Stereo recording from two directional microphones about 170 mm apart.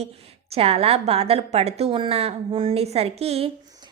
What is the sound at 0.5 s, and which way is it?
A woman's voice, 35° right (ahead or behind).